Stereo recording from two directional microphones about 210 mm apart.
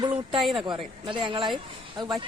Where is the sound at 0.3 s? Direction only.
Centre (ahead or behind).